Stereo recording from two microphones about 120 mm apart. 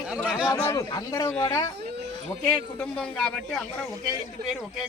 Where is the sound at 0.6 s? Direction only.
25° left (ahead or behind).